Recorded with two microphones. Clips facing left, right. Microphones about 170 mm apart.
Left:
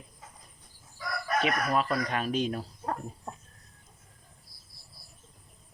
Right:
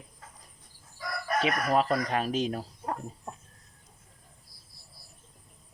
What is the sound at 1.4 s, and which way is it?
Speech, 35° right (ahead or behind).